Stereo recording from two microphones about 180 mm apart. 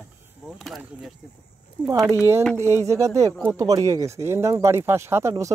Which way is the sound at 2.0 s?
15° right (ahead or behind).